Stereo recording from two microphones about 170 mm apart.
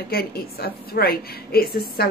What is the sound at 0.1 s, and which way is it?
A woman's voice, 65° left (ahead or behind).